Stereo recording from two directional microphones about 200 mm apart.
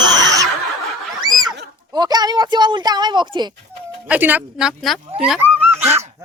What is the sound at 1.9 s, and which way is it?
Speech, 20° right (ahead or behind).